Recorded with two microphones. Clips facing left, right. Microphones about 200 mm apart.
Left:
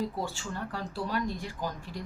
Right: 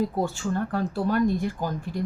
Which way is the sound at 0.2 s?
50° right (ahead or behind).